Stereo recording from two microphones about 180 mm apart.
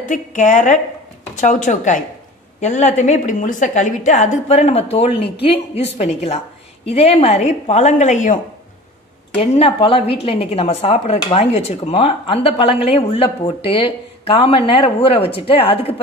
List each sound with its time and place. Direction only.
0.0 s a woman's voice: 45° left (ahead or behind)
9.4 s speech: 30° left (ahead or behind)